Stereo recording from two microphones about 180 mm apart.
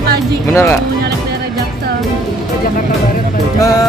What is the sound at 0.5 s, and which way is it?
Music, 15° left (ahead or behind).